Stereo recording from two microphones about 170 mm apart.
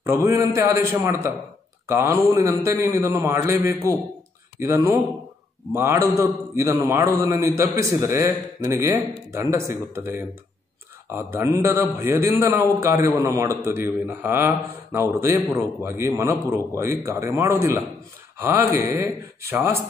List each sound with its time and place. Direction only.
0.0 s a man's voice: 15° right (ahead or behind)